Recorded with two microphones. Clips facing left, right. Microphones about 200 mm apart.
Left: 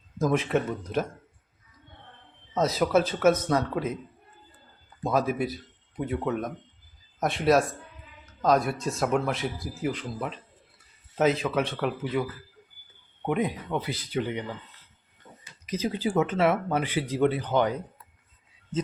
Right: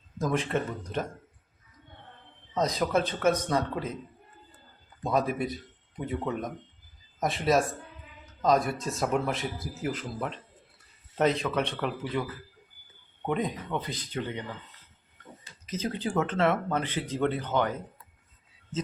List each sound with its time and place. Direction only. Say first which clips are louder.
0.2 s speech: left 4 dB; 5° left (ahead or behind)
2.6 s speech: left 3 dB; 5° left (ahead or behind)
5.0 s speech: left 2 dB; centre (ahead or behind)
13.2 s speech: left 3 dB; 10° left (ahead or behind)
15.6 s speech: left 3 dB; 10° left (ahead or behind)